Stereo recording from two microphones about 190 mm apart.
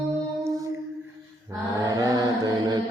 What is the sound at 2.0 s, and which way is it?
Mantra, 20° right (ahead or behind).